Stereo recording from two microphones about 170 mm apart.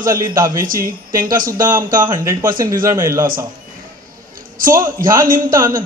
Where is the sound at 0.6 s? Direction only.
55° right (ahead or behind).